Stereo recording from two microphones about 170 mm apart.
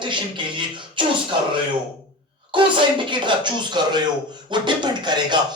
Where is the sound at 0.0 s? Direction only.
30° right (ahead or behind).